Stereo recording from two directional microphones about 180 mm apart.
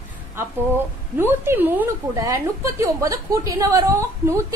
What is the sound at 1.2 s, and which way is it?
A woman's voice, 10° right (ahead or behind).